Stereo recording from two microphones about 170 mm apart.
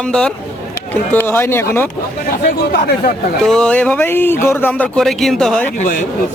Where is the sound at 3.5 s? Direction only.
5° left (ahead or behind).